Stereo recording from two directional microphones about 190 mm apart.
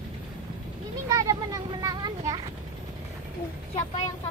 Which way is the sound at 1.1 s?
20° right (ahead or behind).